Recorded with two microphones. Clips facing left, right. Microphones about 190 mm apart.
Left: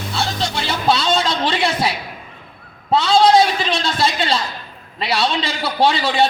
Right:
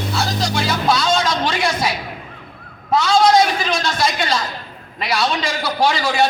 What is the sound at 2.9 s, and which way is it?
A man's voice, 30° left (ahead or behind).